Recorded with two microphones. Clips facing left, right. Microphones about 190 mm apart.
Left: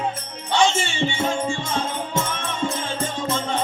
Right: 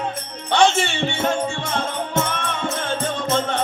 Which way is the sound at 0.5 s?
60° right (ahead or behind).